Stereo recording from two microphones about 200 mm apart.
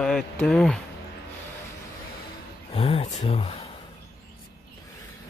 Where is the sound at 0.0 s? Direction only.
Centre (ahead or behind).